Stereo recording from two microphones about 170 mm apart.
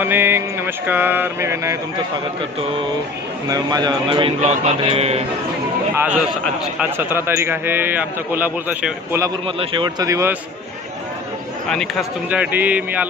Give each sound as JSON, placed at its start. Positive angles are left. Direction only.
{"t": 0.0, "sound": "mantra", "side_deg": -15}
{"t": 3.5, "sound": "a man's voice", "side_deg": -25}
{"t": 6.9, "sound": "mantra", "side_deg": -15}
{"t": 9.6, "sound": "speech", "side_deg": -25}
{"t": 11.7, "sound": "speech", "side_deg": 0}
{"t": 12.3, "sound": "mantra", "side_deg": -10}